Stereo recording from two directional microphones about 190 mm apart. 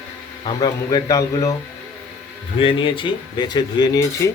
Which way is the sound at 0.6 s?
20° left (ahead or behind).